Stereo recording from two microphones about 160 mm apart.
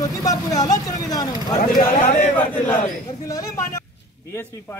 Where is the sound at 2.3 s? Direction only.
10° left (ahead or behind).